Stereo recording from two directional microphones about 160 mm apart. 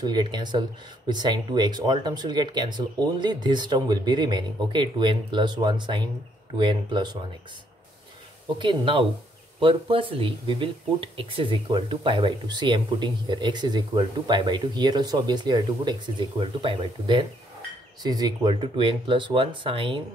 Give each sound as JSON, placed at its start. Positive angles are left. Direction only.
{"t": 0.0, "sound": "speech", "side_deg": -25}
{"t": 8.5, "sound": "speech", "side_deg": -30}